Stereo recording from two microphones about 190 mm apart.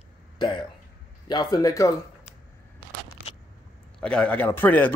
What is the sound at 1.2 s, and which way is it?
Speech, 20° left (ahead or behind).